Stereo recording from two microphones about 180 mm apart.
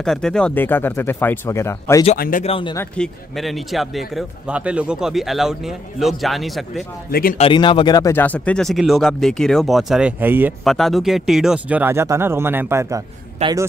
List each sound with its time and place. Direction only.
0.0 s speech: 5° left (ahead or behind)
2.1 s speech: 55° left (ahead or behind)
2.4 s speech: 30° left (ahead or behind)
3.0 s speech: centre (ahead or behind)
7.1 s speech: 55° left (ahead or behind)
7.3 s speech: 30° left (ahead or behind); by 10.5 s 10° right (ahead or behind)
10.6 s speech: centre (ahead or behind)
13.4 s a man's voice: 35° right (ahead or behind)